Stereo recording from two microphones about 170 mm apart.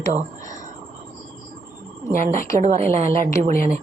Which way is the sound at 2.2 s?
45° right (ahead or behind).